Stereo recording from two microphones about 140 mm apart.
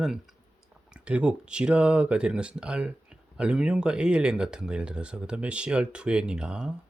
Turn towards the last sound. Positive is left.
turn(degrees=-5)  # may be behind; listen again after turning